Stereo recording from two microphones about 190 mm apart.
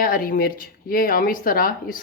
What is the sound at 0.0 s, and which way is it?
Speech, 50° left (ahead or behind).